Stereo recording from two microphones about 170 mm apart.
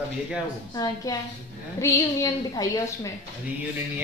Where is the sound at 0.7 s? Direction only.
20° left (ahead or behind).